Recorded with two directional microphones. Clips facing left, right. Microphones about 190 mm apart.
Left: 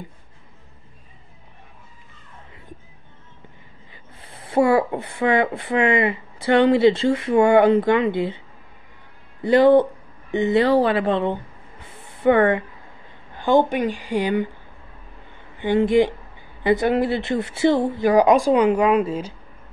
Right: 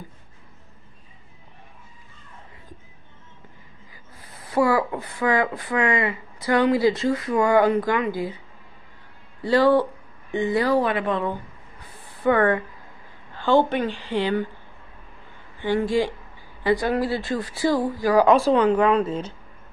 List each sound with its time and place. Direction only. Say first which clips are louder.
3.9 s speech: left 3 dB; 25° left (ahead or behind)
9.4 s speech: left 4 dB; 20° left (ahead or behind)
11.8 s a sound: left 4 dB; 25° left (ahead or behind)
13.3 s a woman's voice: left 2 dB; 15° left (ahead or behind)
15.6 s speech: left 5 dB; 20° left (ahead or behind)